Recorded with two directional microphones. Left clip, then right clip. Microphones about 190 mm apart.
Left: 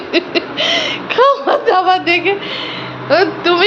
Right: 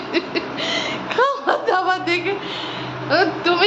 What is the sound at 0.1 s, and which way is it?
Speech, 20° left (ahead or behind).